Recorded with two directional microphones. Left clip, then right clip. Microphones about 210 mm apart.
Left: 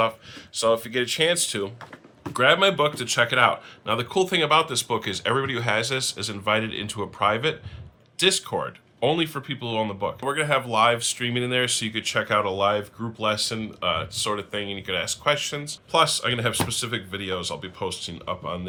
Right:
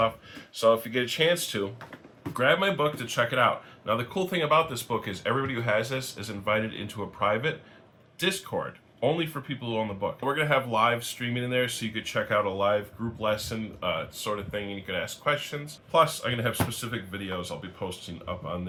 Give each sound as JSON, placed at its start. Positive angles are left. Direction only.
{"t": 0.5, "sound": "speech", "side_deg": 50}